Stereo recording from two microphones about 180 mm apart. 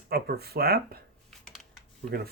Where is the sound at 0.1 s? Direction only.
60° right (ahead or behind).